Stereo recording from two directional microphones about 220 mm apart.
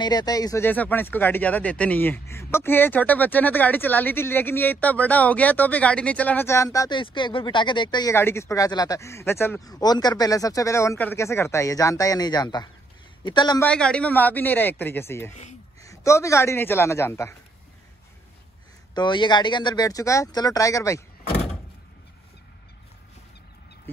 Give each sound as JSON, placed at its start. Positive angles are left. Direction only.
{"t": 0.0, "sound": "a man's voice", "side_deg": 15}
{"t": 13.7, "sound": "speech", "side_deg": 5}
{"t": 18.9, "sound": "speech", "side_deg": 20}